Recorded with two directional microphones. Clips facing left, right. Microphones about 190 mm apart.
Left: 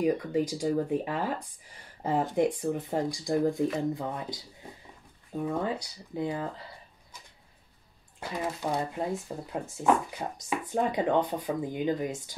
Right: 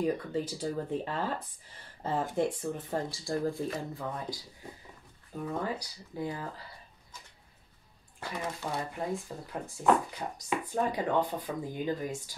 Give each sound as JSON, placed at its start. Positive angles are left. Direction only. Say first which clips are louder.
{"t": 0.0, "sound": "speech", "louder": "left 4 dB", "side_deg": 15}
{"t": 8.7, "sound": "speech", "louder": "left 3 dB", "side_deg": 20}